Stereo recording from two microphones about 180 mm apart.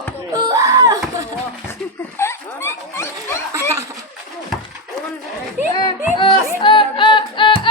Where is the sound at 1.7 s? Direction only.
15° left (ahead or behind).